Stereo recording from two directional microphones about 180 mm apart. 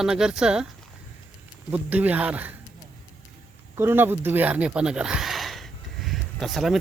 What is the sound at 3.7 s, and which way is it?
Speech, 15° right (ahead or behind).